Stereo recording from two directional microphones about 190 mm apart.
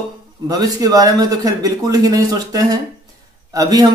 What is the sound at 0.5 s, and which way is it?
A man's voice, 20° right (ahead or behind).